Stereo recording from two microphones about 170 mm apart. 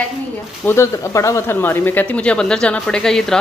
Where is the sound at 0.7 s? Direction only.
15° left (ahead or behind).